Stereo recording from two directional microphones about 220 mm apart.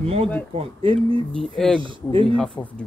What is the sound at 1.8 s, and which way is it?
Speech, 20° right (ahead or behind).